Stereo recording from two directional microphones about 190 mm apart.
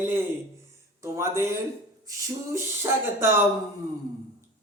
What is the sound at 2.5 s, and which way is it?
Speech, 10° right (ahead or behind).